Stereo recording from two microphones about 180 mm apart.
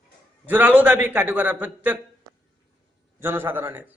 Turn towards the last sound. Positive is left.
turn(degrees=-10)  # may be behind; listen again after turning